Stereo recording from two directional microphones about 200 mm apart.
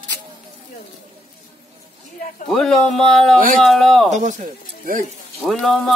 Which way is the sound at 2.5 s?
Centre (ahead or behind).